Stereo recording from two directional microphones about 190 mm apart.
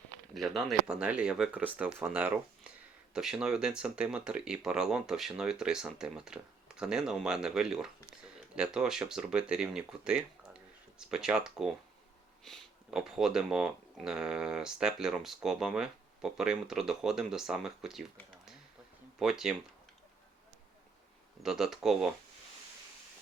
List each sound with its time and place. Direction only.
0.3 s speech: centre (ahead or behind)
19.2 s speech: 5° right (ahead or behind)
21.4 s speech: 5° right (ahead or behind)